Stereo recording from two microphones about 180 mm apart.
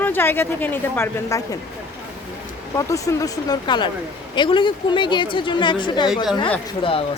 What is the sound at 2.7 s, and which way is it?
A woman's voice, 20° left (ahead or behind).